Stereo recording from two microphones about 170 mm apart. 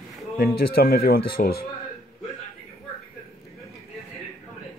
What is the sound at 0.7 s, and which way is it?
Speech, 60° left (ahead or behind).